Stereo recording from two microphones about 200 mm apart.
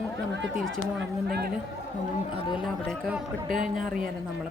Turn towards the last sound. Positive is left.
turn(degrees=-5)  # may be behind; listen again after turning